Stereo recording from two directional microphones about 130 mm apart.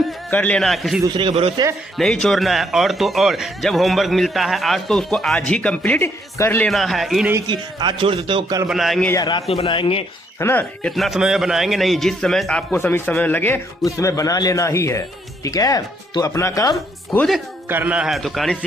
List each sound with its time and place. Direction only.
0.3 s speech: 10° left (ahead or behind)
1.1 s a man's voice: 45° right (ahead or behind)
2.0 s speech: 5° left (ahead or behind); by 6.7 s 20° left (ahead or behind)
6.7 s speech: centre (ahead or behind)
7.4 s a man's voice: 35° right (ahead or behind)
8.6 s speech: centre (ahead or behind)
9.5 s a man's voice: 45° left (ahead or behind)
10.4 s a man's voice: 15° left (ahead or behind)
10.8 s speech: centre (ahead or behind)
12.7 s a man's voice: 15° left (ahead or behind)
17.7 s speech: 10° right (ahead or behind)